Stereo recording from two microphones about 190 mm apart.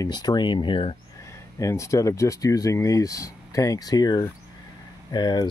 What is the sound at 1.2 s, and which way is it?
Speech, 15° left (ahead or behind).